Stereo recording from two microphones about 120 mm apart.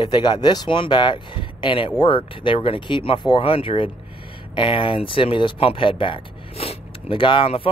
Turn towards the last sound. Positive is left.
turn(degrees=45)  # may be behind; listen again after turning